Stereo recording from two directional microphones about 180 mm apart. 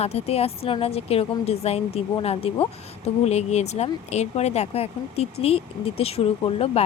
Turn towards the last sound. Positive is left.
turn(degrees=35)  # may be behind; listen again after turning